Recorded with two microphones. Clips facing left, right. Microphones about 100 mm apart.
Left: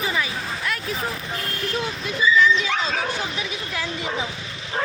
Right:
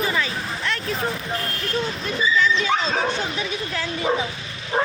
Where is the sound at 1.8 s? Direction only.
10° left (ahead or behind).